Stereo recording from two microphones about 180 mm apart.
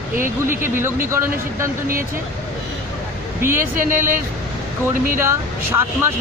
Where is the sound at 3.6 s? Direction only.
50° right (ahead or behind).